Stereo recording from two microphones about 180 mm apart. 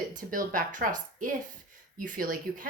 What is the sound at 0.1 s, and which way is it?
Speech, 50° right (ahead or behind).